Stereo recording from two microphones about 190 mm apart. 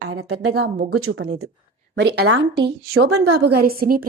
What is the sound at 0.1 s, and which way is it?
A woman's voice, 70° right (ahead or behind).